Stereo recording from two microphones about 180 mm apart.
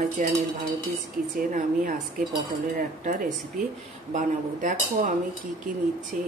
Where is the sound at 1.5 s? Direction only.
50° right (ahead or behind).